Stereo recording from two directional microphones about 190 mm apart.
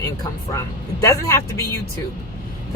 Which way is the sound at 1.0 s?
15° left (ahead or behind).